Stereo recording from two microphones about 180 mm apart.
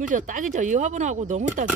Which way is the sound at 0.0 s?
45° right (ahead or behind).